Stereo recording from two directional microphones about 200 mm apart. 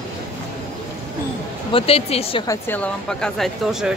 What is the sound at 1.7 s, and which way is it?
Speech, 30° left (ahead or behind).